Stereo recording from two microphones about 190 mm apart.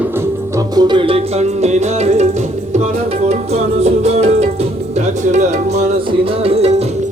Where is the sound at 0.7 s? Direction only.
20° right (ahead or behind).